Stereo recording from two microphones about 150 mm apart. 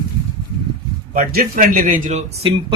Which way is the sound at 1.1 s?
75° right (ahead or behind).